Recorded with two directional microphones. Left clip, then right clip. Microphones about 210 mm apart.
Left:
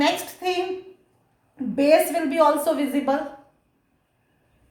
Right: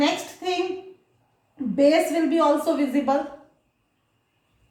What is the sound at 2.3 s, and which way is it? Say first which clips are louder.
Speech: left 3 dB; 35° left (ahead or behind).